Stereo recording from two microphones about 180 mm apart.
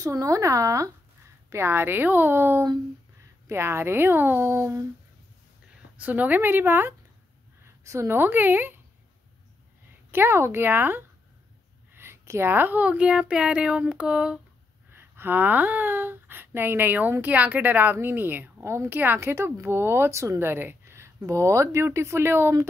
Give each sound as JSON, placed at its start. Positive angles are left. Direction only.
{"t": 0.0, "sound": "speech", "side_deg": -20}
{"t": 5.9, "sound": "a woman's voice", "side_deg": -10}
{"t": 10.1, "sound": "speech", "side_deg": -15}